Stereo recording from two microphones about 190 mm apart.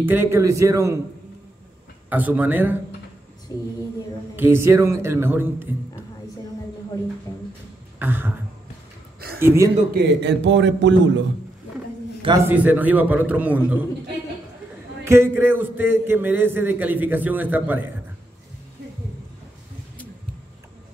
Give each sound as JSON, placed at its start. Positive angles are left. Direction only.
{"t": 0.0, "sound": "a man's voice", "side_deg": -10}
{"t": 2.0, "sound": "a man's voice", "side_deg": -10}
{"t": 3.5, "sound": "a sound", "side_deg": 15}
{"t": 4.4, "sound": "a man's voice", "side_deg": -10}
{"t": 8.0, "sound": "a man's voice", "side_deg": -10}
{"t": 9.4, "sound": "a man's voice", "side_deg": -10}
{"t": 9.9, "sound": "a man's voice", "side_deg": -65}
{"t": 12.2, "sound": "a man's voice", "side_deg": -25}
{"t": 12.4, "sound": "a man's voice", "side_deg": -10}
{"t": 15.0, "sound": "a man's voice", "side_deg": -10}